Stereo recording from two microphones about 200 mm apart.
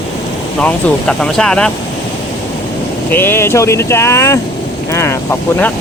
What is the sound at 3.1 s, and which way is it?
Speech, 10° left (ahead or behind).